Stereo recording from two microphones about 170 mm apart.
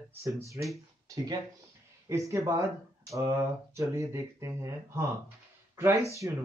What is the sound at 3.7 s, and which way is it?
Speech, 15° right (ahead or behind).